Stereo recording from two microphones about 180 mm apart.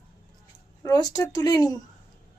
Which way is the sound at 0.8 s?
20° left (ahead or behind).